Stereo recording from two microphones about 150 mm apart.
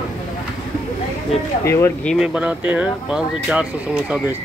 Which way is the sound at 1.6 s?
20° left (ahead or behind).